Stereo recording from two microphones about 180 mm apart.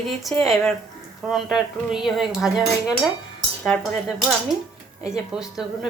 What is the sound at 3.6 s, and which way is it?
A woman's voice, 5° left (ahead or behind).